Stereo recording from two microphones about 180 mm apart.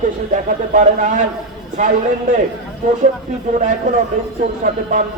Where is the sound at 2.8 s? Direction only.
45° right (ahead or behind).